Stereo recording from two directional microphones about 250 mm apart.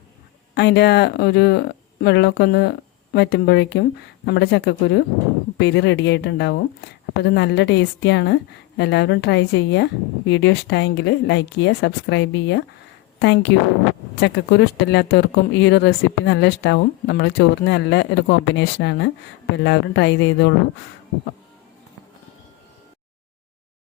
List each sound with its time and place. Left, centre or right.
0.5 s a woman's voice: left